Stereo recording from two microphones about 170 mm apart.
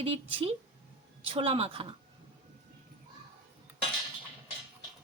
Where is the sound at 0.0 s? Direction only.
35° right (ahead or behind).